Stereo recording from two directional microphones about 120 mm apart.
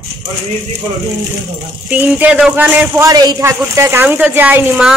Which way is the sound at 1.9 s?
10° right (ahead or behind).